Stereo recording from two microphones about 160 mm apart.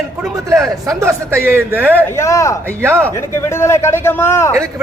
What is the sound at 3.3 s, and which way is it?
Speech, 15° left (ahead or behind).